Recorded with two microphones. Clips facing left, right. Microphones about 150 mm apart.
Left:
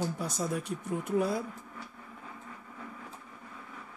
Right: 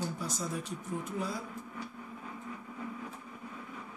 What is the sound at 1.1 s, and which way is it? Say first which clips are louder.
Speech: left 10 dB; 60° left (ahead or behind).